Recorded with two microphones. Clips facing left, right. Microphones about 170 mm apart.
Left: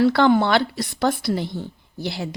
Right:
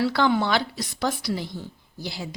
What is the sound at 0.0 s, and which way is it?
A woman's voice, 55° left (ahead or behind).